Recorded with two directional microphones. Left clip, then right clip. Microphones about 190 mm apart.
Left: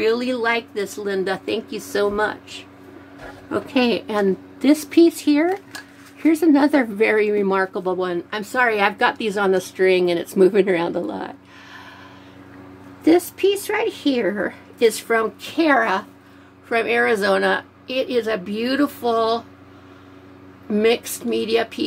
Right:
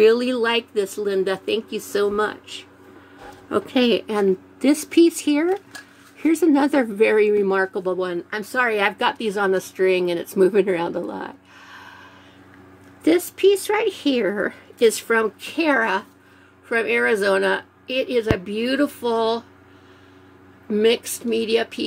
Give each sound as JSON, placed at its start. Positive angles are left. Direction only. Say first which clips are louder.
{"t": 0.0, "sound": "speech", "louder": "right 3 dB", "side_deg": -20}
{"t": 3.4, "sound": "speech", "louder": "right 1 dB", "side_deg": -25}
{"t": 13.0, "sound": "a woman's voice", "louder": "left 1 dB", "side_deg": -25}
{"t": 20.7, "sound": "speech", "louder": "even", "side_deg": -10}